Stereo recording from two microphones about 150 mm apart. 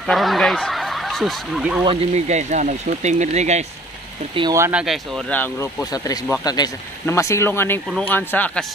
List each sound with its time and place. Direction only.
0.0 s speech: centre (ahead or behind)
1.9 s speech: 50° right (ahead or behind)
4.6 s speech: 15° right (ahead or behind)
4.8 s speech: centre (ahead or behind)
5.3 s speech: 10° left (ahead or behind)
6.4 s speech: 25° left (ahead or behind)